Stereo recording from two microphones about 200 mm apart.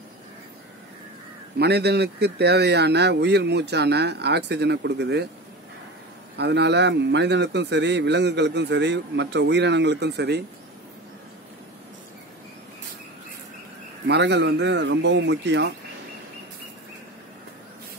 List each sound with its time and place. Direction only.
1.6 s a man's voice: 55° right (ahead or behind)
6.3 s a man's voice: 55° right (ahead or behind)
14.0 s a man's voice: 60° right (ahead or behind)